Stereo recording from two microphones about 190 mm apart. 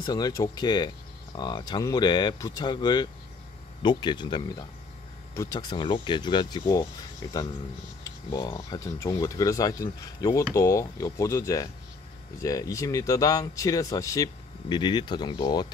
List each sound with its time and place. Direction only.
0.0 s speech: 20° left (ahead or behind)
8.0 s a sound: 20° left (ahead or behind)
8.6 s speech: 15° left (ahead or behind)